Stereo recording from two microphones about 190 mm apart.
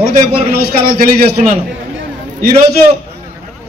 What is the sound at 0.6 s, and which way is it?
Speech, 50° right (ahead or behind).